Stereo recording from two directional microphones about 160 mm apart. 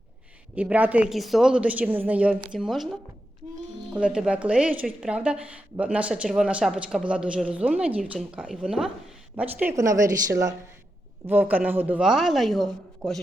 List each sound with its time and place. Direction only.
0.5 s a woman's voice: 10° right (ahead or behind)